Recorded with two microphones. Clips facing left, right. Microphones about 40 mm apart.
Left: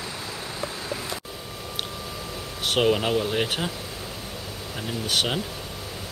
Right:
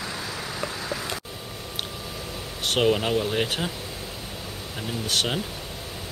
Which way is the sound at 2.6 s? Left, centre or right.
Centre.